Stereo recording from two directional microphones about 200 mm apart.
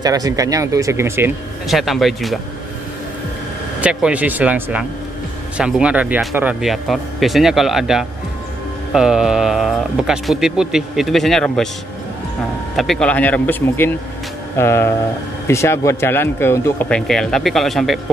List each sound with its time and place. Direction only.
0.0 s speech: 20° right (ahead or behind)
1.7 s speech: centre (ahead or behind)
3.8 s speech: 5° right (ahead or behind)
12.7 s a man's voice: centre (ahead or behind)